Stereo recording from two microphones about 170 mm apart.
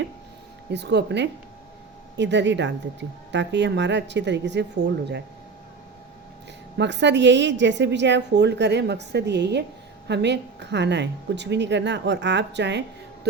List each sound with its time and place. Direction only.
0.7 s a woman's voice: 85° right
6.7 s a woman's voice: 90° right